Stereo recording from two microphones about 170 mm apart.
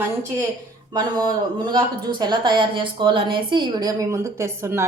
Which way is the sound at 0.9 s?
25° right (ahead or behind).